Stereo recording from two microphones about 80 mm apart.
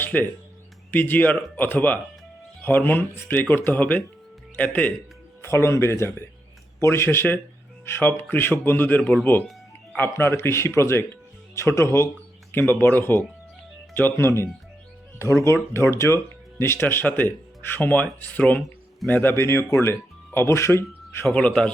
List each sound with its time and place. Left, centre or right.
0.0 s music: left
0.9 s speech: left
5.4 s speech: left
10.0 s speech: left
15.7 s speech: left
21.2 s a man's voice: centre